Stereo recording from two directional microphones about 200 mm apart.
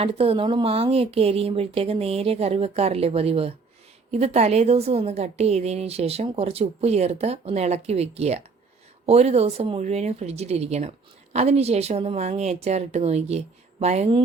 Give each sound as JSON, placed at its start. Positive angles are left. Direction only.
{"t": 0.0, "sound": "a woman's voice", "side_deg": -30}